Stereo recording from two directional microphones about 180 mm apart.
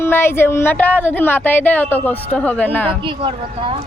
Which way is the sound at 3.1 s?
30° right (ahead or behind).